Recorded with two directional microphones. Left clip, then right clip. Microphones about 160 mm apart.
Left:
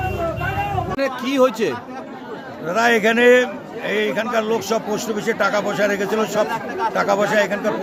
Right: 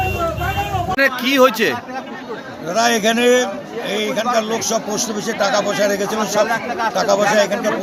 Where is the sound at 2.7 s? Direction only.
40° left (ahead or behind).